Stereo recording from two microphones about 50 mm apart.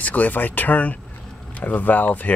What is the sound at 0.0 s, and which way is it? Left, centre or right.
Speech, left.